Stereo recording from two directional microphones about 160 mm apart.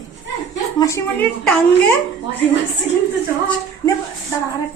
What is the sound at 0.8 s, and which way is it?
Speech, 20° left (ahead or behind).